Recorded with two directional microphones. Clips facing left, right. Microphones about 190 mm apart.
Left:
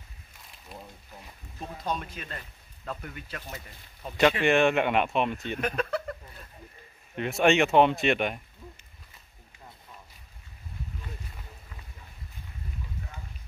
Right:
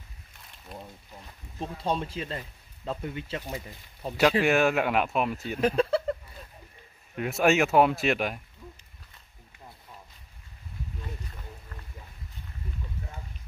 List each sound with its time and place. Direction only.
1.6 s speech: 30° right (ahead or behind)
4.4 s speech: 5° right (ahead or behind)
5.6 s a sound: 30° right (ahead or behind)
7.2 s speech: 5° right (ahead or behind)